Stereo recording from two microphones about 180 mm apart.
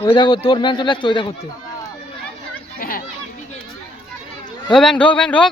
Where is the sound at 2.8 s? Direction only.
50° left (ahead or behind).